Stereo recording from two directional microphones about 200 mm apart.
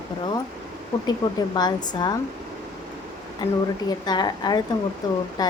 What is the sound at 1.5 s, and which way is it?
Speech, 20° left (ahead or behind).